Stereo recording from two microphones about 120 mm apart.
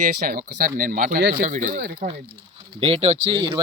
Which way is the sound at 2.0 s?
50° right (ahead or behind).